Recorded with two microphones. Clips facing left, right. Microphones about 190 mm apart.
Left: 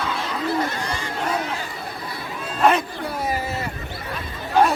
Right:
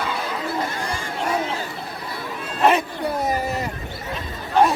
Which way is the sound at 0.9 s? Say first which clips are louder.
Even; 50° right (ahead or behind).